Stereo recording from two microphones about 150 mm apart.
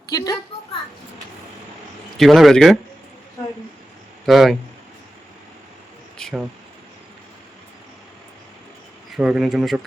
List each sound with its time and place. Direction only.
0.1 s a woman's voice: 25° left (ahead or behind)
2.1 s speech: centre (ahead or behind)
4.3 s speech: centre (ahead or behind)
6.1 s speech: 5° left (ahead or behind)
9.1 s speech: 5° right (ahead or behind)